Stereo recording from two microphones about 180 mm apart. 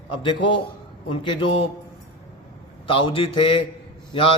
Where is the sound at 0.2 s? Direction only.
30° left (ahead or behind).